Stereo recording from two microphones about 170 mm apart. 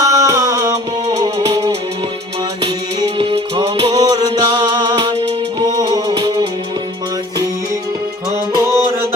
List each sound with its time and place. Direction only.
0.0 s music: 20° right (ahead or behind)
8.5 s music: 15° right (ahead or behind)